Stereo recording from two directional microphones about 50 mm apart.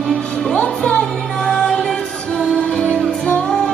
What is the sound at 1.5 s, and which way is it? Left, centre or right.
Music, centre.